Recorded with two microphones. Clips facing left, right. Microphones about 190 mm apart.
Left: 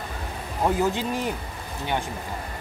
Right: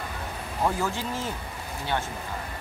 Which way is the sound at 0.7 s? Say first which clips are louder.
Left 5 dB; 20° left (ahead or behind).